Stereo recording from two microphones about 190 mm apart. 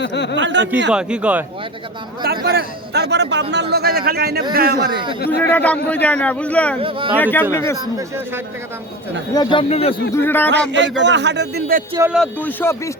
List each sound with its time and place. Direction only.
0.0 s speech: 65° left (ahead or behind)
0.3 s a man's voice: 70° right (ahead or behind)
0.9 s speech: 5° right (ahead or behind)
2.2 s a man's voice: 55° right (ahead or behind)
5.4 s a man's voice: 10° left (ahead or behind)
6.7 s speech: 30° right (ahead or behind)
7.2 s a man's voice: 10° left (ahead or behind)
9.3 s speech: 25° left (ahead or behind)
10.2 s a man's voice: 10° left (ahead or behind)
10.7 s a man's voice: 70° right (ahead or behind)
12.1 s a man's voice: 5° left (ahead or behind)